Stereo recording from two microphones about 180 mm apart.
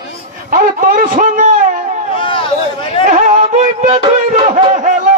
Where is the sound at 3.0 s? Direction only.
45° right (ahead or behind).